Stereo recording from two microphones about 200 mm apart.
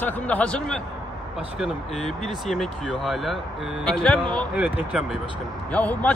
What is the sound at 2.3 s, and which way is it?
A man's voice, centre (ahead or behind).